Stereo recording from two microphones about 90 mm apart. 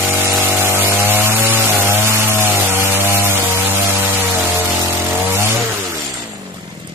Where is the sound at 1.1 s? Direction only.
25° right (ahead or behind).